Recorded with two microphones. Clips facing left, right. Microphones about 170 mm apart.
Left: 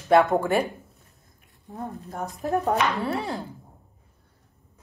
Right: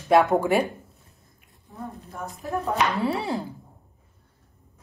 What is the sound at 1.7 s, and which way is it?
A woman's voice, 35° left (ahead or behind).